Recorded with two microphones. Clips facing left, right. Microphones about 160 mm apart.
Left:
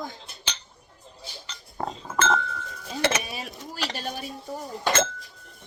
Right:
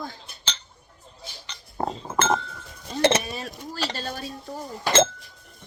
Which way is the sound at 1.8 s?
30° right (ahead or behind).